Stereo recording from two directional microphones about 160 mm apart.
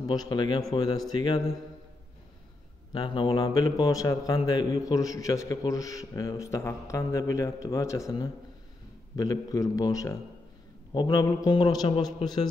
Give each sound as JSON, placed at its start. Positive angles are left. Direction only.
{"t": 0.1, "sound": "a man's voice", "side_deg": 25}
{"t": 2.9, "sound": "a man's voice", "side_deg": 30}